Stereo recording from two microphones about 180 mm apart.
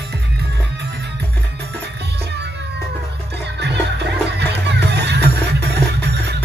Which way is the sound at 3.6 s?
70° right (ahead or behind).